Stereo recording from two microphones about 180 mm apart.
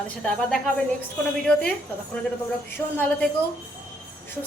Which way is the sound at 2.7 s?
10° left (ahead or behind).